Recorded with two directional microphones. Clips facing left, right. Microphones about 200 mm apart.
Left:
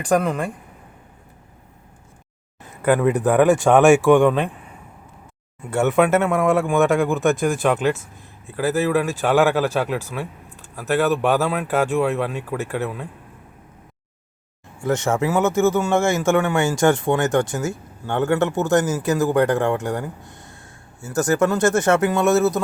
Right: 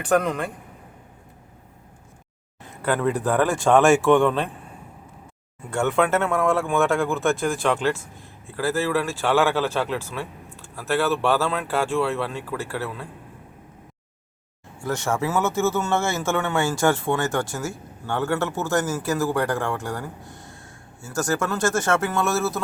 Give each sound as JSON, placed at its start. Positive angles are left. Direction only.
{"t": 0.1, "sound": "speech", "side_deg": 5}
{"t": 2.9, "sound": "speech", "side_deg": 15}
{"t": 5.7, "sound": "speech", "side_deg": 20}
{"t": 14.8, "sound": "speech", "side_deg": 20}